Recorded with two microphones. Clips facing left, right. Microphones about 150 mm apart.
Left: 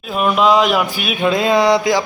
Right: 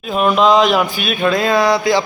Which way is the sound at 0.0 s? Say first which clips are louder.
Right 2 dB; centre (ahead or behind).